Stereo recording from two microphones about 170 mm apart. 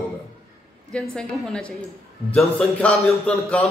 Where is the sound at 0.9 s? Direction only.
5° left (ahead or behind).